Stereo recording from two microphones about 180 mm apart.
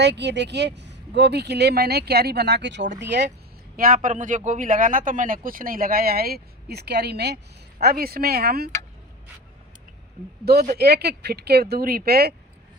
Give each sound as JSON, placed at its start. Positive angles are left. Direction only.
{"t": 0.0, "sound": "speech", "side_deg": -70}
{"t": 3.8, "sound": "speech", "side_deg": -50}
{"t": 10.4, "sound": "speech", "side_deg": -60}